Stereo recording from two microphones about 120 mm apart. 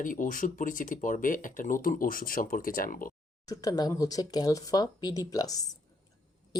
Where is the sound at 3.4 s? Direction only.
30° left (ahead or behind).